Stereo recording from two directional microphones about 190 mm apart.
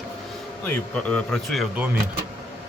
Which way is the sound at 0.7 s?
5° left (ahead or behind).